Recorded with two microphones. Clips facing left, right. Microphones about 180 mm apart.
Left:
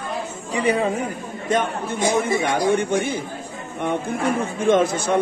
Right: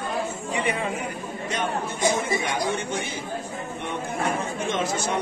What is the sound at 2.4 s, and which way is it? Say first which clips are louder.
Speech: left 7 dB; 55° left (ahead or behind).